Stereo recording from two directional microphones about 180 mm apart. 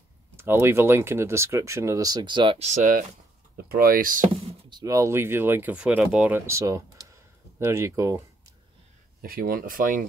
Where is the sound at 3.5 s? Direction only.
55° right (ahead or behind).